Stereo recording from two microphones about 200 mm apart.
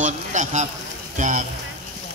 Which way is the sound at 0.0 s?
40° right (ahead or behind).